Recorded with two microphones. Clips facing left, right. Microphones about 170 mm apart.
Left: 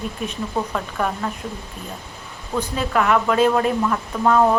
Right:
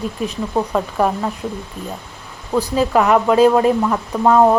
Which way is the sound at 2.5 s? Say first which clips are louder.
Right 6 dB; 35° right (ahead or behind).